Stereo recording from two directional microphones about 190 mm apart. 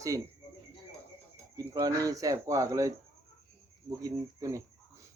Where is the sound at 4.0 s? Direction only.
15° right (ahead or behind).